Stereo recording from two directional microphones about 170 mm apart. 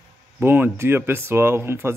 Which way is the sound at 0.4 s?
15° right (ahead or behind).